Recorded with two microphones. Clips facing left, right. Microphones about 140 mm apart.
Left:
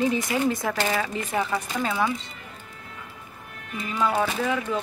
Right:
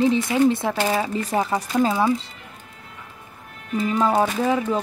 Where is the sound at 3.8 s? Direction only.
35° right (ahead or behind).